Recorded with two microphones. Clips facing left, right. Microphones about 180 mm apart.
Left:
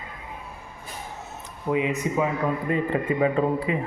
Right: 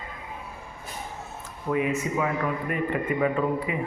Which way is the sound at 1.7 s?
20° left (ahead or behind).